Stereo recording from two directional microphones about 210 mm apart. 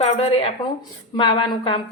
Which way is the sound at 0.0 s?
30° left (ahead or behind).